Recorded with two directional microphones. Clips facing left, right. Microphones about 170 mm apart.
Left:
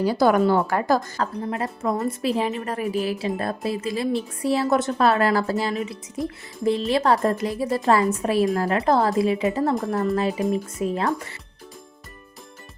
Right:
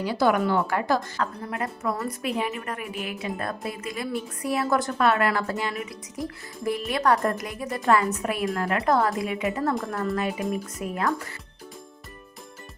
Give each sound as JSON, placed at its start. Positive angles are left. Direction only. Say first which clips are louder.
{"t": 0.0, "sound": "a woman's voice", "louder": "left 4 dB", "side_deg": 40}
{"t": 1.5, "sound": "a woman's voice", "louder": "left 4 dB", "side_deg": 30}
{"t": 5.7, "sound": "a woman's voice", "louder": "left 6 dB", "side_deg": 25}